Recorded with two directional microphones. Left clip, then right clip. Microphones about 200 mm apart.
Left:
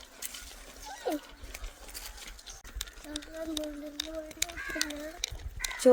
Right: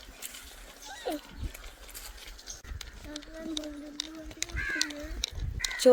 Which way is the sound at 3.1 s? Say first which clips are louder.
Left 1 dB; 45° left (ahead or behind).